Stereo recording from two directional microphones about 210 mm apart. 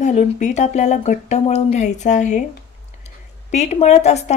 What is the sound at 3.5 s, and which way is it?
Speech, 30° left (ahead or behind).